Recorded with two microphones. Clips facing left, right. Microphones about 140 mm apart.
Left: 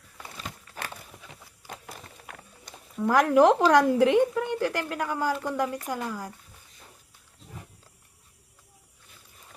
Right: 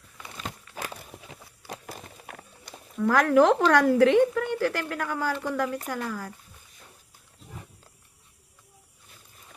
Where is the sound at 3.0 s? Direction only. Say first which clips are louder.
Even; 15° left (ahead or behind).